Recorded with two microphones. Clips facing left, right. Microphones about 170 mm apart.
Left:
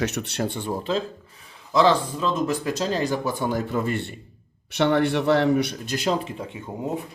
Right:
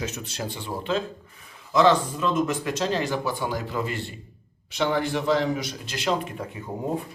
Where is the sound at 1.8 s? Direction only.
35° left (ahead or behind); by 4.1 s 55° left (ahead or behind).